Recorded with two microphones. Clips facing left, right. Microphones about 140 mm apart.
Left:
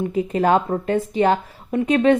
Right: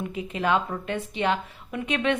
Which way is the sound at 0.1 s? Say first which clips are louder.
Left 7 dB; 40° left (ahead or behind).